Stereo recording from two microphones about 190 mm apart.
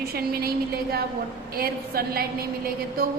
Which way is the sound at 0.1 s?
55° right (ahead or behind).